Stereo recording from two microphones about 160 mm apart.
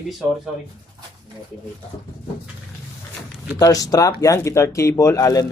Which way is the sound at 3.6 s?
20° left (ahead or behind).